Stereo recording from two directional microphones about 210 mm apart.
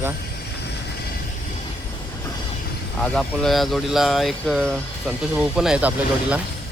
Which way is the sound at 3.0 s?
5° left (ahead or behind).